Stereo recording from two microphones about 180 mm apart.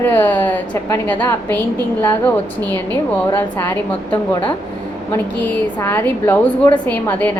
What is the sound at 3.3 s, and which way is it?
Speech, 15° left (ahead or behind).